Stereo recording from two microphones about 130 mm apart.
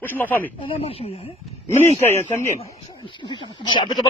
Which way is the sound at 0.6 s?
45° left (ahead or behind).